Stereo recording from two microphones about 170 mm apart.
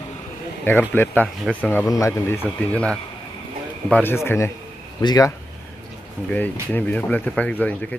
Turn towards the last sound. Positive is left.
turn(degrees=10)  # may be behind; listen again after turning